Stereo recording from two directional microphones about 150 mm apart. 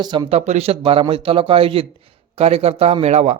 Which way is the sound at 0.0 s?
30° right (ahead or behind).